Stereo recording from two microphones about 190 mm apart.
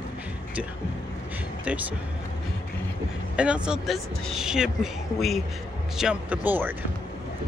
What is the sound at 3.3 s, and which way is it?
Speech, 5° right (ahead or behind).